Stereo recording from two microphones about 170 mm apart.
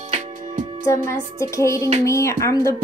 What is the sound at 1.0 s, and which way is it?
Music, 15° left (ahead or behind).